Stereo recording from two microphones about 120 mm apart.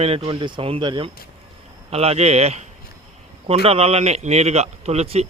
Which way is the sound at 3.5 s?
55° right (ahead or behind).